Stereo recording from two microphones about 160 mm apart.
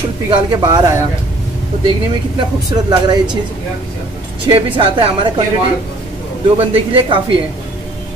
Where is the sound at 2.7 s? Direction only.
25° right (ahead or behind).